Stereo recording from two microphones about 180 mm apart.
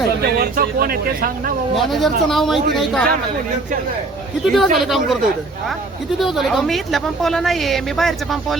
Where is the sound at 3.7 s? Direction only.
45° right (ahead or behind).